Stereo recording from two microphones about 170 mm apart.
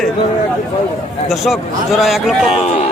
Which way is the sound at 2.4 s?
40° left (ahead or behind).